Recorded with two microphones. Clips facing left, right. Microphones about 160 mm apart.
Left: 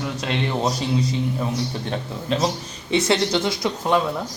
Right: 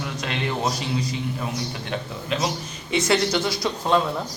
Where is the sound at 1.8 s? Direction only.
35° left (ahead or behind); by 4.0 s 15° left (ahead or behind).